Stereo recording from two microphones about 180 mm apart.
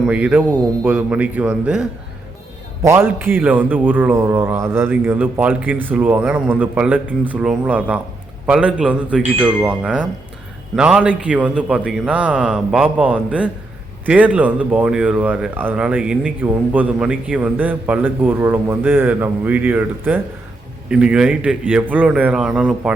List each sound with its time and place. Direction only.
0.1 s speech: 5° right (ahead or behind)